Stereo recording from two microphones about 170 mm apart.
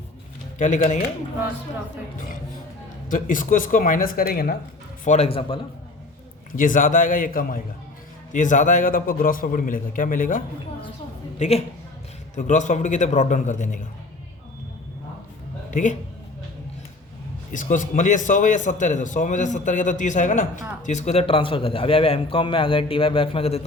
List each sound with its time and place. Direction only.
0.6 s speech: 45° left (ahead or behind)
2.1 s speech: 55° left (ahead or behind)
5.0 s a man's voice: 40° left (ahead or behind)
6.6 s speech: 50° left (ahead or behind)
11.3 s a woman's voice: 40° left (ahead or behind)
15.7 s speech: 50° left (ahead or behind)
17.5 s a man's voice: 50° left (ahead or behind)